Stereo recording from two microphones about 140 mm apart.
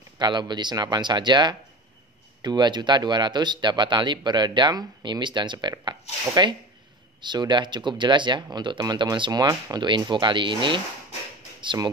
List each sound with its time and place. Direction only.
0.2 s speech: 30° right (ahead or behind)